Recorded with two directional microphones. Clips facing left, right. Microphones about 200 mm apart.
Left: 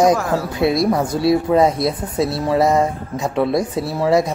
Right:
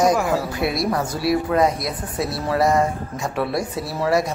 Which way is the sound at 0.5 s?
20° left (ahead or behind).